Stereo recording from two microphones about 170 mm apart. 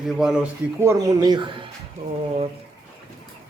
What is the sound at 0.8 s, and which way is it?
Speech, 20° right (ahead or behind).